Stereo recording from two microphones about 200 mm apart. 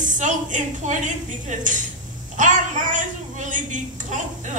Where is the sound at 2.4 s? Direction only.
40° right (ahead or behind).